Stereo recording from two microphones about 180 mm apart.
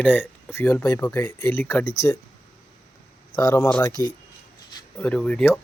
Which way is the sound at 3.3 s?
20° left (ahead or behind).